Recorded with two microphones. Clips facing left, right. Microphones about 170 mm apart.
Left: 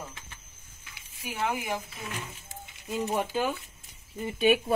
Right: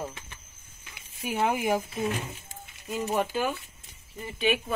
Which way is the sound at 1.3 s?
20° right (ahead or behind).